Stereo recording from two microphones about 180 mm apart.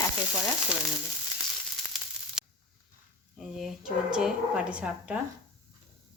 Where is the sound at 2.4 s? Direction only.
5° right (ahead or behind).